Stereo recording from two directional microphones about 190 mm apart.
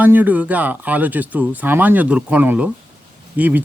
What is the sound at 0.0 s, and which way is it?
Speech, 10° right (ahead or behind).